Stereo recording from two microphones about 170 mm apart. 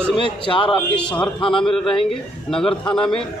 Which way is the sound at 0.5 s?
30° left (ahead or behind).